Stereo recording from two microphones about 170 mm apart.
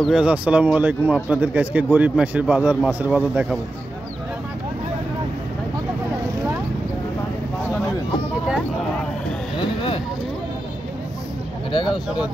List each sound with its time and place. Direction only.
0.0 s a man's voice: 5° right (ahead or behind)
9.6 s vehicle: 30° left (ahead or behind)
11.7 s a sound: 25° left (ahead or behind)